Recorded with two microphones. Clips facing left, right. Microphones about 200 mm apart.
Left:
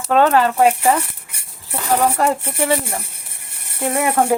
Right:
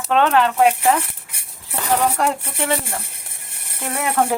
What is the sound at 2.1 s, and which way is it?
Speech, 5° left (ahead or behind).